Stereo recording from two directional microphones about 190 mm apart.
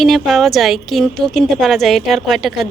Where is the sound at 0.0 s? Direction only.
Centre (ahead or behind).